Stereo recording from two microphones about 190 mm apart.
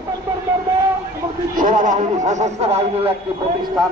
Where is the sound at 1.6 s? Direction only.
40° right (ahead or behind).